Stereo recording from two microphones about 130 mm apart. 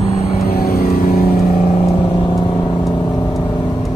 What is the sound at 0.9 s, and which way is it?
Vehicle, 90° left.